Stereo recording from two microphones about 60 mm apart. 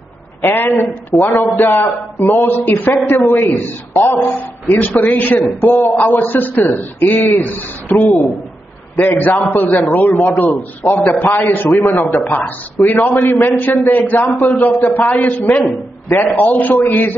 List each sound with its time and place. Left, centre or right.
0.4 s a man's voice: left